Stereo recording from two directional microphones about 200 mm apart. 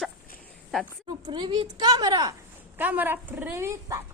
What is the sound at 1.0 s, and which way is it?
Speech, 20° right (ahead or behind).